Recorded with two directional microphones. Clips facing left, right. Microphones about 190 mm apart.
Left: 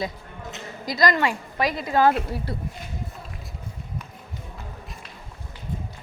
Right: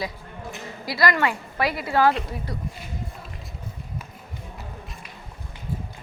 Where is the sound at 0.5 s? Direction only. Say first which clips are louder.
Left 1 dB; 20° left (ahead or behind).